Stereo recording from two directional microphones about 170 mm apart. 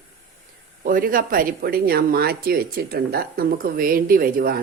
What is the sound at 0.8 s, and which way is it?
Speech, 55° right (ahead or behind).